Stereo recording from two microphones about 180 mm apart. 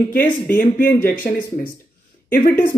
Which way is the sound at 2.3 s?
50° left (ahead or behind).